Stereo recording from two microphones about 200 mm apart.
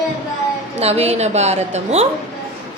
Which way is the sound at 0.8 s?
30° right (ahead or behind).